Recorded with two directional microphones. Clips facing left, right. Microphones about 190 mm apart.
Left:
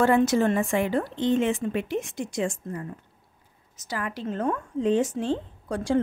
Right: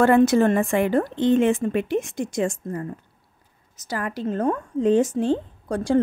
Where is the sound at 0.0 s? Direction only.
60° right (ahead or behind).